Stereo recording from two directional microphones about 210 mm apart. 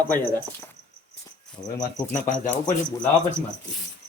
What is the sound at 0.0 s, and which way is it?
Speech, 10° left (ahead or behind).